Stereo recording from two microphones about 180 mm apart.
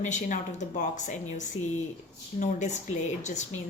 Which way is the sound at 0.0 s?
45° left (ahead or behind).